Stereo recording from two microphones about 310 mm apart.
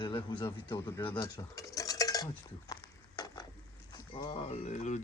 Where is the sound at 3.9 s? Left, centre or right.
Centre.